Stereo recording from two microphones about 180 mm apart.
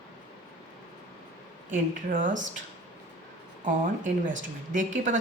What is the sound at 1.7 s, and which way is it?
Speech, 45° right (ahead or behind).